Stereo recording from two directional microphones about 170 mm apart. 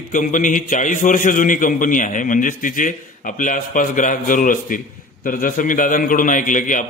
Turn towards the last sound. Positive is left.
turn(degrees=50)  # may be behind; listen again after turning